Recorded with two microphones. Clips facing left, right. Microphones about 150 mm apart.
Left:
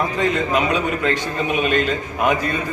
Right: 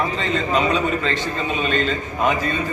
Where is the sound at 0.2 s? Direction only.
10° left (ahead or behind).